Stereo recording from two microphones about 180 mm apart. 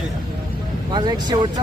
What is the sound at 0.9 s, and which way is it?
Speech, 25° right (ahead or behind).